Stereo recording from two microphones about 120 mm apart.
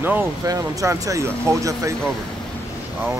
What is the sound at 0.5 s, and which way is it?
Speech, 30° right (ahead or behind).